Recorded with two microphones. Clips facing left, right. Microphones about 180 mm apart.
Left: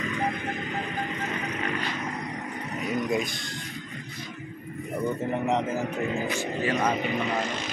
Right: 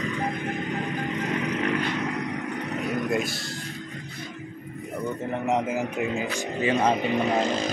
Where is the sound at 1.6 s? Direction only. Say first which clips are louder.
Right 5 dB; 70° right (ahead or behind).